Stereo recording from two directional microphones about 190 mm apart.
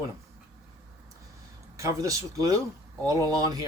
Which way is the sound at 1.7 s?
15° right (ahead or behind).